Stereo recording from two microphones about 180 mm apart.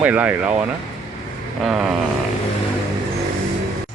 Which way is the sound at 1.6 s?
Centre (ahead or behind).